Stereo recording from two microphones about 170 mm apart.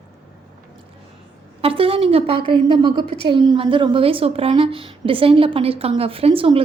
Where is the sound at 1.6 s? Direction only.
35° right (ahead or behind).